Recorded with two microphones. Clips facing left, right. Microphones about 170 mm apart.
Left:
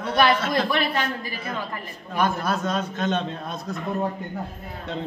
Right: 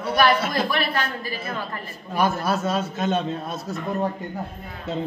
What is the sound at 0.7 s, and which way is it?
Speech, 15° left (ahead or behind).